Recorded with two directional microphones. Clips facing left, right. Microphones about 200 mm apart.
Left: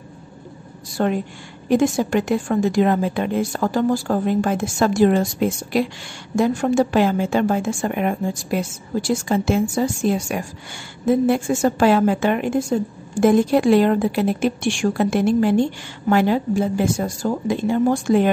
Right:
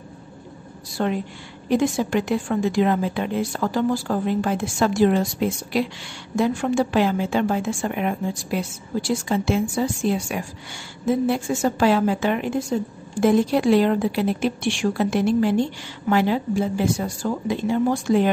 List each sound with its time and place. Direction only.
1.0 s a woman's voice: 45° left (ahead or behind)